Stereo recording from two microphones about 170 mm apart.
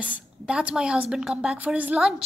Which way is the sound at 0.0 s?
10° right (ahead or behind).